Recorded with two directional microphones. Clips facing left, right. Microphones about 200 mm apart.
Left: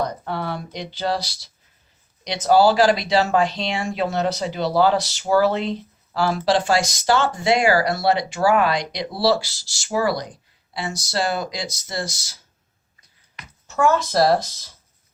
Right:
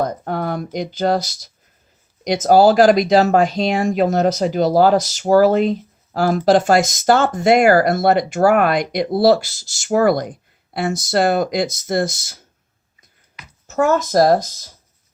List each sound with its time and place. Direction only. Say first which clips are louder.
0.0 s speech: right 4 dB; 45° right (ahead or behind)
13.7 s speech: right 3 dB; 40° right (ahead or behind)